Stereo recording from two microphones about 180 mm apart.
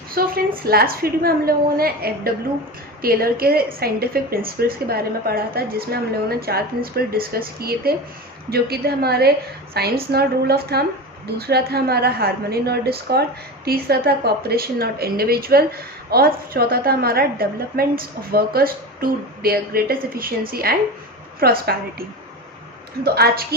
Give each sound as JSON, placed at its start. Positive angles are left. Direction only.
{"t": 0.1, "sound": "a woman's voice", "side_deg": -55}
{"t": 23.0, "sound": "a woman's voice", "side_deg": -60}